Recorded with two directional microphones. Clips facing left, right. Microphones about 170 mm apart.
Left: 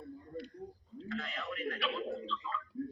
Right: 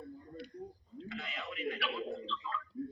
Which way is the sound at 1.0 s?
5° right (ahead or behind).